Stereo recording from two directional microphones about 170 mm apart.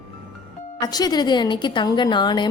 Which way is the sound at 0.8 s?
25° left (ahead or behind).